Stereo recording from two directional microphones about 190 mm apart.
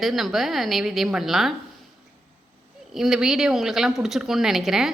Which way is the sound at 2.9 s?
Centre (ahead or behind).